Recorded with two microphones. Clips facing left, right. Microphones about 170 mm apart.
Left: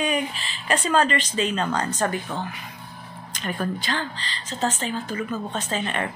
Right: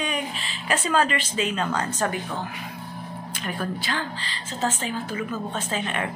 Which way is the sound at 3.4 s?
5° right (ahead or behind).